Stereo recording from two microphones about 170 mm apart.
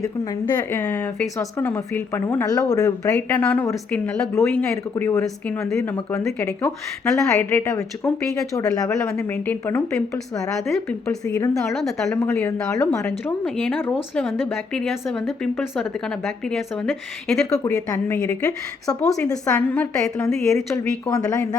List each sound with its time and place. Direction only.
0.0 s speech: 15° left (ahead or behind)
3.2 s speech: 10° left (ahead or behind)
5.2 s a woman's voice: centre (ahead or behind)
7.3 s speech: 15° left (ahead or behind)
9.0 s speech: 10° left (ahead or behind)
11.6 s a woman's voice: centre (ahead or behind); by 13.0 s 20° left (ahead or behind)
13.0 s a woman's voice: 5° left (ahead or behind)
17.5 s speech: 20° left (ahead or behind)
19.3 s speech: 10° left (ahead or behind)